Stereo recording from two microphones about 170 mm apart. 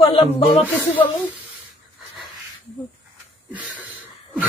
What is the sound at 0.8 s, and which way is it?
Speech, 10° left (ahead or behind).